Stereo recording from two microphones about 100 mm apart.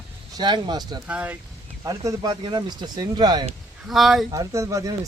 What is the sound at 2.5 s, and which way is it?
Speech, 50° right (ahead or behind).